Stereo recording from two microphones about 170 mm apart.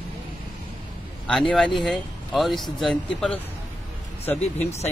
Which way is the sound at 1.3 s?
Centre (ahead or behind).